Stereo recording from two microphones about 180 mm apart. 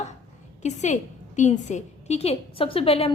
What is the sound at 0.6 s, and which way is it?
A woman's voice, 40° left (ahead or behind).